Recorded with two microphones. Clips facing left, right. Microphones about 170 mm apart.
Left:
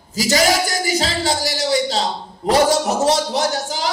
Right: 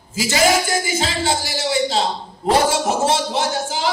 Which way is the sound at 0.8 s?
40° left (ahead or behind).